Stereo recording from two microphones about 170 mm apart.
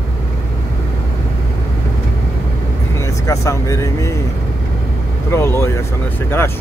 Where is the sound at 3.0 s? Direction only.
15° left (ahead or behind).